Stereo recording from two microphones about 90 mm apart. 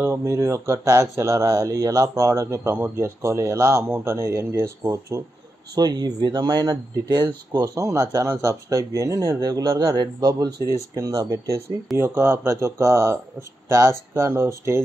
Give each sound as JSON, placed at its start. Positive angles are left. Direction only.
{"t": 0.0, "sound": "speech", "side_deg": -30}
{"t": 5.8, "sound": "speech", "side_deg": -50}